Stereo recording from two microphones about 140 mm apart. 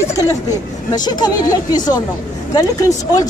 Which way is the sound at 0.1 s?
25° left (ahead or behind).